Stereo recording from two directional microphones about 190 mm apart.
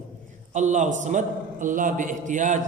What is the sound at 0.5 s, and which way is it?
A man's voice, 40° right (ahead or behind).